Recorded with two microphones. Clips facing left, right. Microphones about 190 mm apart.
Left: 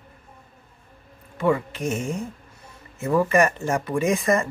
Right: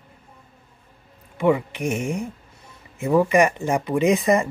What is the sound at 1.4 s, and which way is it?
Speech, 15° right (ahead or behind).